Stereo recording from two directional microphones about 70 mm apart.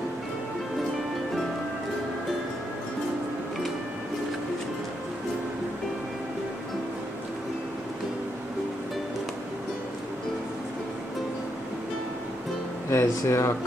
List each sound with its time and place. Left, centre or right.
12.9 s speech: left